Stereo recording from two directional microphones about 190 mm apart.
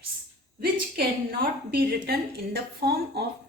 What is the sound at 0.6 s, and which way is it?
A woman's voice, 50° right (ahead or behind).